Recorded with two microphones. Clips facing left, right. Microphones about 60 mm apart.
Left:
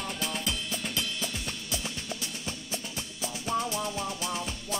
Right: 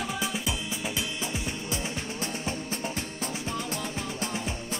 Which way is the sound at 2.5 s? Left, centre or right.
Right.